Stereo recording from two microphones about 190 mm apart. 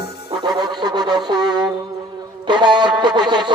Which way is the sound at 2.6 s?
25° right (ahead or behind).